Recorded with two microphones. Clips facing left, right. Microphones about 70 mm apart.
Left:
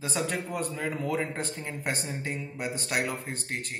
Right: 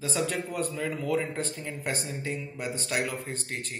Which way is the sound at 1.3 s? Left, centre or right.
Left.